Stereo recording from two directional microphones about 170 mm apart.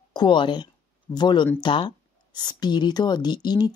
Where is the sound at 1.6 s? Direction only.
25° left (ahead or behind).